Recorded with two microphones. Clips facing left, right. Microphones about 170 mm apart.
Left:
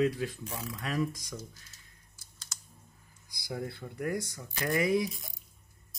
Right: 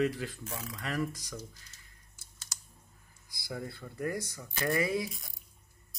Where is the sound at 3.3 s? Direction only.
20° left (ahead or behind).